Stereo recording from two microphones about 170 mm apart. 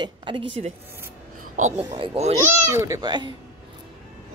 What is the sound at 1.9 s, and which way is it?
Speech, 30° right (ahead or behind).